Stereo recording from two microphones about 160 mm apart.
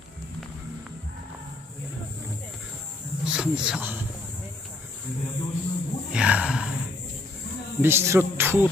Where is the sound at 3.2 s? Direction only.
5° right (ahead or behind).